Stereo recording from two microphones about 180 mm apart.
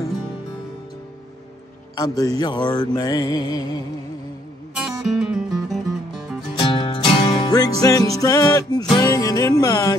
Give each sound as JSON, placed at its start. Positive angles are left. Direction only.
{"t": 2.0, "sound": "mantra", "side_deg": 20}
{"t": 5.0, "sound": "music", "side_deg": 0}
{"t": 6.6, "sound": "music", "side_deg": 30}
{"t": 7.5, "sound": "music", "side_deg": 20}
{"t": 8.9, "sound": "mantra", "side_deg": 20}